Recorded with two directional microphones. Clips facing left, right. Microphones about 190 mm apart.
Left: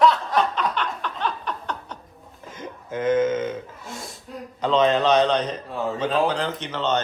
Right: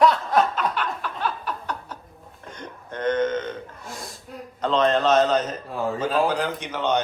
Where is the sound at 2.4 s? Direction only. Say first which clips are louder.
Left 2 dB; 5° left (ahead or behind).